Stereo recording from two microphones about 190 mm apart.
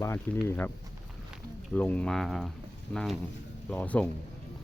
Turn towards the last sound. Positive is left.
turn(degrees=10)  # may be behind; listen again after turning